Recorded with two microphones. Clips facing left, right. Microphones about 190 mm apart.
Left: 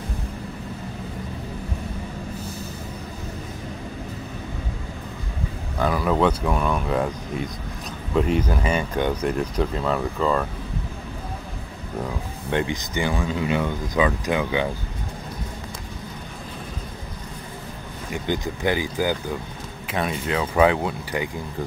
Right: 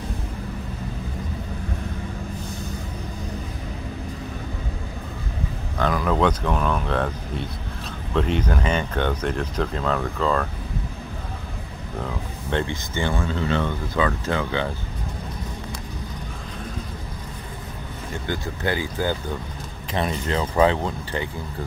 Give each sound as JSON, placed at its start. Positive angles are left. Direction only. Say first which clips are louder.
{"t": 5.8, "sound": "speech", "louder": "left 1 dB", "side_deg": 5}
{"t": 12.0, "sound": "speech", "louder": "left 1 dB", "side_deg": 15}
{"t": 18.1, "sound": "speech", "louder": "left 3 dB", "side_deg": 15}
{"t": 19.9, "sound": "speech", "louder": "even", "side_deg": 5}